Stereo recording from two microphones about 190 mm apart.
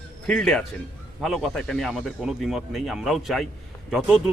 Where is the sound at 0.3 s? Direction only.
5° left (ahead or behind).